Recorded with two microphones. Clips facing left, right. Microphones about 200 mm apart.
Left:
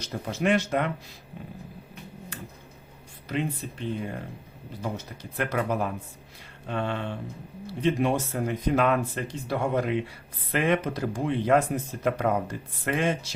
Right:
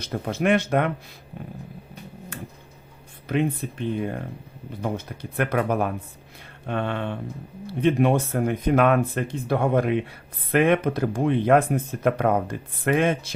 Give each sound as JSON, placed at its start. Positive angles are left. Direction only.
{"t": 0.0, "sound": "speech", "side_deg": -55}
{"t": 2.3, "sound": "clicking", "side_deg": -55}
{"t": 3.2, "sound": "speech", "side_deg": -55}